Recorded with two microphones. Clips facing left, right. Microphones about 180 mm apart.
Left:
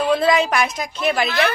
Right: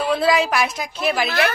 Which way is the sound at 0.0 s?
5° right (ahead or behind).